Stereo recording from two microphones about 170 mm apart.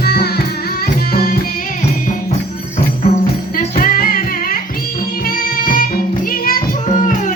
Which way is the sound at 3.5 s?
55° left (ahead or behind).